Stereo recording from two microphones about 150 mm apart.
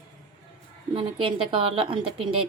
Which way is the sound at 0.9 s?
35° right (ahead or behind).